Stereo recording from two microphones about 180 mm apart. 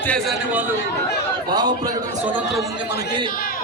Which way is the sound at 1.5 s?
25° right (ahead or behind).